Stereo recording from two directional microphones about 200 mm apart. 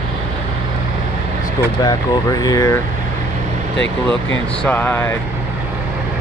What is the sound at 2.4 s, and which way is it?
Speech, 15° left (ahead or behind).